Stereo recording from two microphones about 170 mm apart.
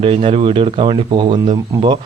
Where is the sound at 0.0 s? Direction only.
30° right (ahead or behind).